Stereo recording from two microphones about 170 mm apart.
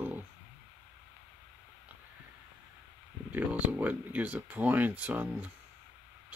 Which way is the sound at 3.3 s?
10° right (ahead or behind).